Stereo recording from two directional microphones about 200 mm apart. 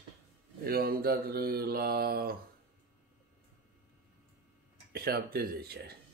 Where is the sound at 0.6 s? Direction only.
50° right (ahead or behind).